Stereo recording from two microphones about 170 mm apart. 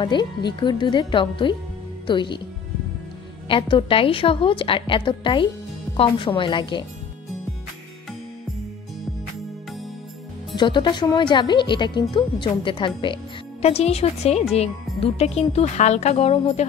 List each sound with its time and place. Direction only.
0.0 s speech: 25° left (ahead or behind)
3.4 s a woman's voice: 30° left (ahead or behind)
10.5 s a woman's voice: 25° left (ahead or behind)